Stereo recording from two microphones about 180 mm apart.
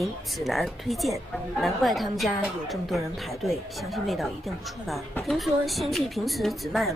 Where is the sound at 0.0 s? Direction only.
Centre (ahead or behind).